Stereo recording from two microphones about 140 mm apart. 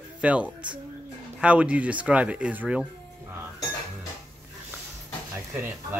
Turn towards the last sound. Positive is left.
turn(degrees=-15)  # may be behind; listen again after turning